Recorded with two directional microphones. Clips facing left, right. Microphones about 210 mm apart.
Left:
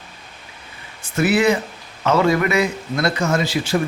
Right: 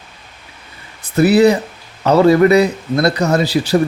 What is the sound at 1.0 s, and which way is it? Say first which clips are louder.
A man's voice: right 7 dB; 35° right (ahead or behind).